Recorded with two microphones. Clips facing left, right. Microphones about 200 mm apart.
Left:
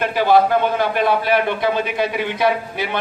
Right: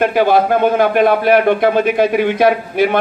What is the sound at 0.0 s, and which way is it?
A man's voice, 50° right (ahead or behind).